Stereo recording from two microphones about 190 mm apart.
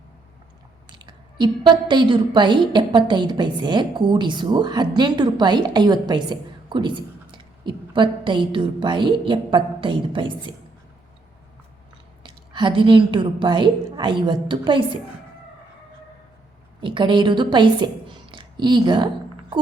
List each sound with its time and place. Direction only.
0.9 s a woman's voice: 25° right (ahead or behind)
12.2 s a woman's voice: 25° right (ahead or behind)
16.8 s a woman's voice: 25° right (ahead or behind)